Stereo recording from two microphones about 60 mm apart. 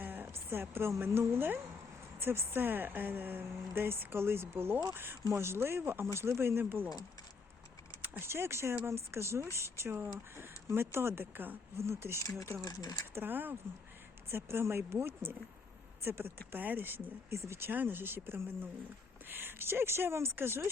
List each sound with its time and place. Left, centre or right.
0.0 s a sound: right
0.5 s a woman's voice: right
8.2 s a woman's voice: right
11.8 s a woman's voice: right
12.2 s speech: left
12.6 s speech: left
13.1 s a woman's voice: right
14.9 s a woman's voice: right
17.3 s a woman's voice: right
17.7 s a woman's voice: right